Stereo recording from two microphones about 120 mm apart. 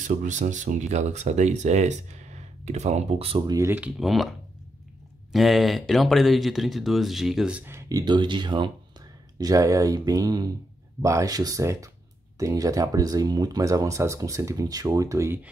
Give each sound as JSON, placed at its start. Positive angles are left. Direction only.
{"t": 0.0, "sound": "speech", "side_deg": -90}
{"t": 3.4, "sound": "speech", "side_deg": -25}
{"t": 4.0, "sound": "speech", "side_deg": 0}
{"t": 5.3, "sound": "speech", "side_deg": 0}
{"t": 7.6, "sound": "speech", "side_deg": -25}
{"t": 8.0, "sound": "speech", "side_deg": -40}
{"t": 9.4, "sound": "speech", "side_deg": -30}